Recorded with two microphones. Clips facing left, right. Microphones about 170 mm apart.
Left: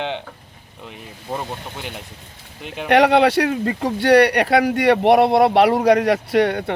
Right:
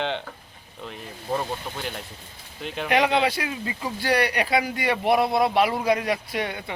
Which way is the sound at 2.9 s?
70° left (ahead or behind).